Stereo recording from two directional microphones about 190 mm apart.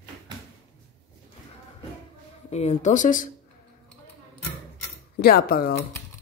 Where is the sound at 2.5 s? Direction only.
35° left (ahead or behind).